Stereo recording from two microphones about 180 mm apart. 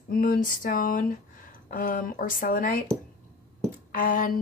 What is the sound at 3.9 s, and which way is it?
Speech, 50° left (ahead or behind).